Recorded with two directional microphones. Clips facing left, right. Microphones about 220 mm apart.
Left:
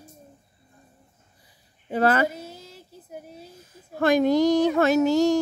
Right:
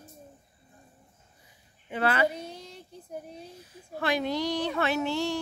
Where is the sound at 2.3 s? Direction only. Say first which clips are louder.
Even; 5° left (ahead or behind).